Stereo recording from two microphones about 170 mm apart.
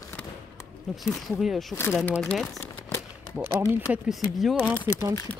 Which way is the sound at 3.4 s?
10° right (ahead or behind).